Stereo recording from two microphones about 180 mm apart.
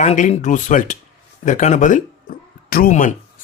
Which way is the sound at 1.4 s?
45° left (ahead or behind).